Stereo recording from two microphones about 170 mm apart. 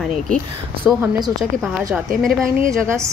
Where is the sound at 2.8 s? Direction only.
15° right (ahead or behind).